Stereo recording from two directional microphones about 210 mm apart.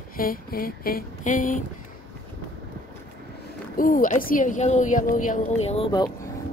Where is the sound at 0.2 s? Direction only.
45° left (ahead or behind).